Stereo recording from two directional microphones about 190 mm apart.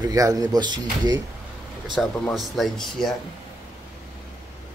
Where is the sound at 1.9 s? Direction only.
Centre (ahead or behind).